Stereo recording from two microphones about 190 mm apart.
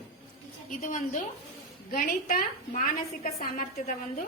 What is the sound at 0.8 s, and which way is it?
A woman's voice, 40° left (ahead or behind).